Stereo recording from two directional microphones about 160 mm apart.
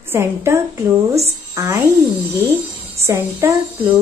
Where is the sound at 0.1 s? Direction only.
15° right (ahead or behind).